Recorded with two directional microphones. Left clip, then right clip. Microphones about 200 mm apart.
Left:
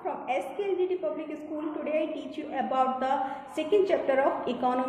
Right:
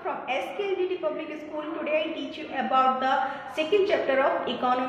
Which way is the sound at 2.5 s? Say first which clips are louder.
Right 4 dB; 55° left (ahead or behind).